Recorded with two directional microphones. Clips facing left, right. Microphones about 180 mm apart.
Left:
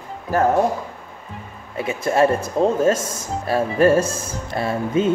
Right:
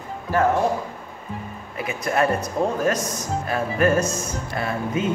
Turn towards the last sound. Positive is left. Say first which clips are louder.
# left 4 dB
turn(degrees=30)  # may be behind; listen again after turning